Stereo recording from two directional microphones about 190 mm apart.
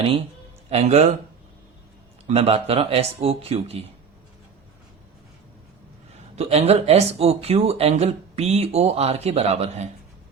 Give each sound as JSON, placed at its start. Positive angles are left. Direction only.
{"t": 0.7, "sound": "speech", "side_deg": -35}
{"t": 2.2, "sound": "speech", "side_deg": -30}
{"t": 6.3, "sound": "speech", "side_deg": -35}